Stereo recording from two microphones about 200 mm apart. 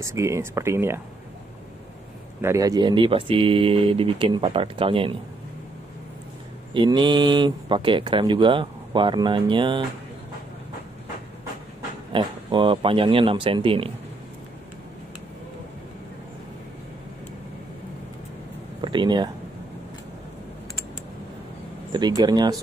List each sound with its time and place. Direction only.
0.0 s speech: 15° right (ahead or behind)
2.4 s speech: 15° right (ahead or behind)
6.7 s speech: 25° right (ahead or behind)
12.1 s speech: 25° right (ahead or behind)
18.8 s speech: 25° right (ahead or behind)
21.9 s speech: 20° right (ahead or behind)